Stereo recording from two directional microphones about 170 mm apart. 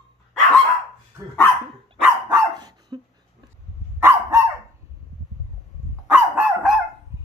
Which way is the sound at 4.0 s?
15° right (ahead or behind).